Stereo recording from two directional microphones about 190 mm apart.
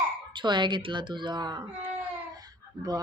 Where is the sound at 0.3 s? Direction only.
25° right (ahead or behind).